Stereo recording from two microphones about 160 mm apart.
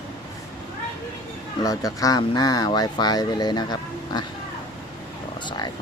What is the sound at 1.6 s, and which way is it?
Speech, 20° left (ahead or behind).